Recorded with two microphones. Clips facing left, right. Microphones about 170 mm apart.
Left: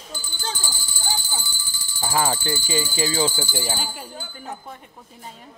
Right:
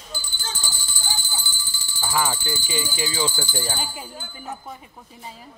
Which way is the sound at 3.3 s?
15° left (ahead or behind).